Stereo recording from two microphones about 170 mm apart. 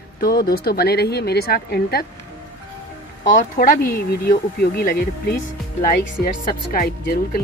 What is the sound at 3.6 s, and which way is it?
A woman's voice, 60° left (ahead or behind).